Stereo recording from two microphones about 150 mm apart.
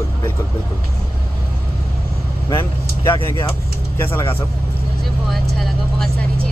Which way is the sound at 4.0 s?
15° left (ahead or behind).